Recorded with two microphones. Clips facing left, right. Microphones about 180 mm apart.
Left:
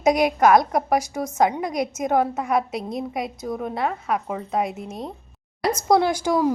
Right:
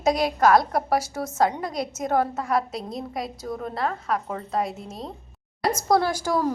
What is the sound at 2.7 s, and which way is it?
A woman's voice, centre (ahead or behind).